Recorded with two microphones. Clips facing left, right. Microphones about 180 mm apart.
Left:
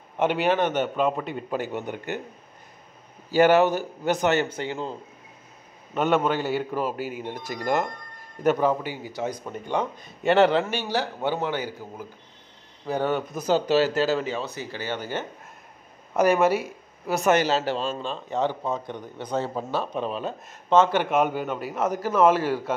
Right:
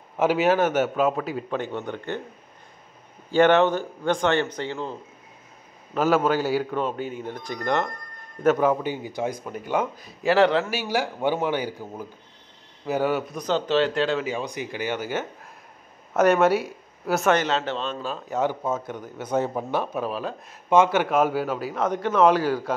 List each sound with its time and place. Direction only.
0.2 s speech: 5° right (ahead or behind)
1.5 s a man's voice: 10° left (ahead or behind)
3.3 s a man's voice: 5° left (ahead or behind)
5.9 s speech: centre (ahead or behind)
8.5 s speech: 15° right (ahead or behind)
12.8 s speech: 10° right (ahead or behind)
13.4 s a man's voice: 10° left (ahead or behind)
14.2 s speech: 15° right (ahead or behind); by 17.9 s 5° left (ahead or behind)
18.0 s speech: 5° right (ahead or behind)